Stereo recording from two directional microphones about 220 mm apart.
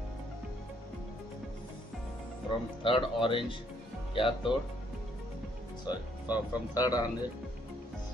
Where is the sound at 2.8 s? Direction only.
25° left (ahead or behind).